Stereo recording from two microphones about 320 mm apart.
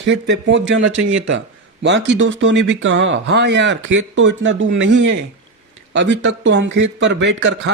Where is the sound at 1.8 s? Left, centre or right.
Right.